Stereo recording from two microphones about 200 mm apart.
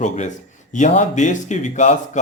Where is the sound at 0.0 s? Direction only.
35° left (ahead or behind).